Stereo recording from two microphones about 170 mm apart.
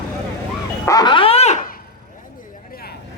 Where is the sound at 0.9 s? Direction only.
25° left (ahead or behind).